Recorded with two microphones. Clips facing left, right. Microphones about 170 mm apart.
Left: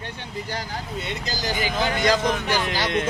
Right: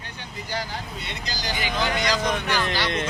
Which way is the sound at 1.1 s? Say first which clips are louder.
Left 3 dB; 45° left (ahead or behind).